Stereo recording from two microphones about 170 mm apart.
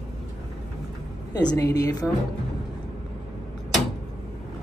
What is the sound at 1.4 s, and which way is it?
Speech, 20° left (ahead or behind).